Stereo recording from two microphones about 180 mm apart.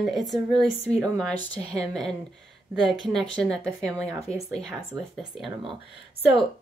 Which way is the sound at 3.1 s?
5° left (ahead or behind).